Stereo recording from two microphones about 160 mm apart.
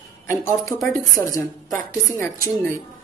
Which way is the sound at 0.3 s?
20° left (ahead or behind).